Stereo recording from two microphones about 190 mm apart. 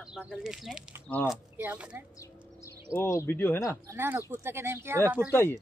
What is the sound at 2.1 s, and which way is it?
Speech, 15° left (ahead or behind).